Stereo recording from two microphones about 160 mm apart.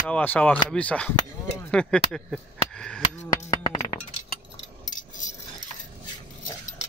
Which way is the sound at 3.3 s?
20° left (ahead or behind).